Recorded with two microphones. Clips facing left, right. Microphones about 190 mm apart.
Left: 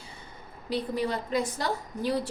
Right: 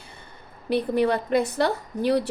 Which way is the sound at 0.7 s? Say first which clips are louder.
Right 7 dB; 60° right (ahead or behind).